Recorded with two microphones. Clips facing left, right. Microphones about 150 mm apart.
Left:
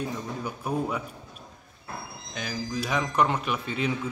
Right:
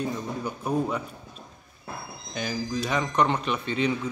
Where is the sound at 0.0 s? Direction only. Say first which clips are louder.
Right 2 dB; 5° left (ahead or behind).